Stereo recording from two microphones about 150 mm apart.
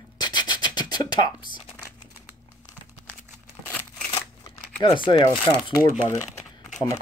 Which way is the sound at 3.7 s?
10° left (ahead or behind).